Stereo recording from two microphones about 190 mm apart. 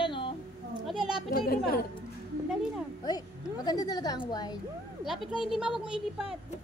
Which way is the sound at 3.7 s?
20° left (ahead or behind).